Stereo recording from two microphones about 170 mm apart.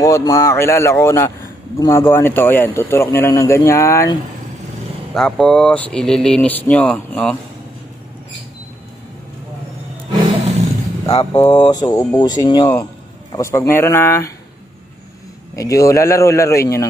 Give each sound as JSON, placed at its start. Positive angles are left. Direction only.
{"t": 0.0, "sound": "speech", "side_deg": 20}
{"t": 5.1, "sound": "speech", "side_deg": 5}
{"t": 10.4, "sound": "roaring cats", "side_deg": -40}
{"t": 11.1, "sound": "speech", "side_deg": 20}
{"t": 15.5, "sound": "speech", "side_deg": 20}